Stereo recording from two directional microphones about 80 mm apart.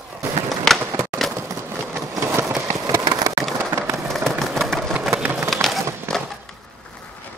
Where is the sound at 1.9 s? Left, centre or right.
Right.